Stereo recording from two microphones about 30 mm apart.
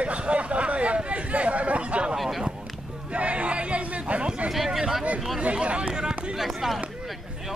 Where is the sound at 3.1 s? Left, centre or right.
Right.